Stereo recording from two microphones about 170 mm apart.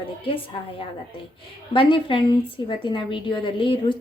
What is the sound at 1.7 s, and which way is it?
A woman's voice, 30° left (ahead or behind).